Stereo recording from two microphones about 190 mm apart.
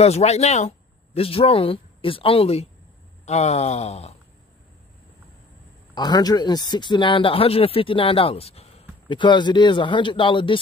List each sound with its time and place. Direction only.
0.0 s speech: 35° left (ahead or behind)
3.3 s a sound: 35° left (ahead or behind)
5.9 s speech: 20° left (ahead or behind)